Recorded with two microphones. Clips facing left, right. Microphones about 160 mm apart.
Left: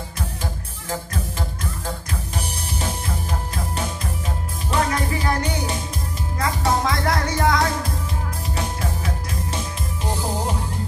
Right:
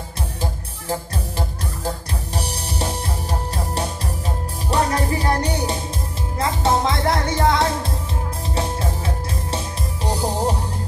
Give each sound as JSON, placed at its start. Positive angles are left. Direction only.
{"t": 0.4, "sound": "music", "side_deg": -30}
{"t": 2.3, "sound": "music", "side_deg": -35}
{"t": 6.4, "sound": "music", "side_deg": -25}